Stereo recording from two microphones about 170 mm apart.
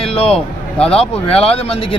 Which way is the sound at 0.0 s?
35° left (ahead or behind).